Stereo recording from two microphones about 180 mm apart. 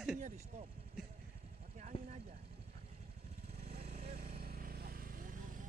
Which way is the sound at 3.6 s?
40° right (ahead or behind).